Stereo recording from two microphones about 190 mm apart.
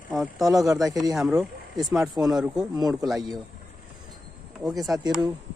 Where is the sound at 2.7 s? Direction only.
20° right (ahead or behind).